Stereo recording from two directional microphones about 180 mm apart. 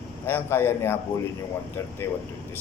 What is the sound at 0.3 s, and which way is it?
Speech, 10° left (ahead or behind).